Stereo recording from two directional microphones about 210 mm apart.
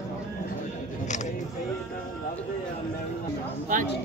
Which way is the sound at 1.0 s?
35° left (ahead or behind).